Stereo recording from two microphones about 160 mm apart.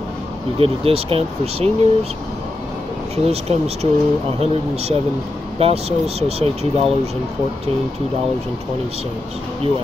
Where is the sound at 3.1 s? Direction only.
40° right (ahead or behind).